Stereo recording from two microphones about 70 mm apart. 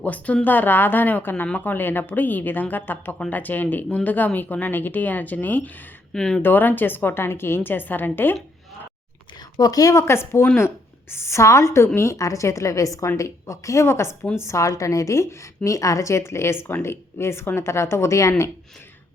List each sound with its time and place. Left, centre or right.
0.0 s a woman's voice: left
6.1 s speech: centre
6.4 s a woman's voice: left
9.6 s a woman's voice: left
10.0 s a woman's voice: left